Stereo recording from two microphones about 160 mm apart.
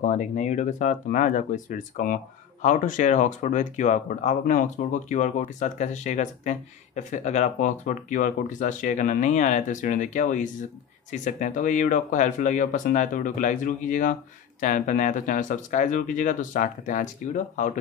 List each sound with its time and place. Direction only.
0.0 s speech: 45° left (ahead or behind)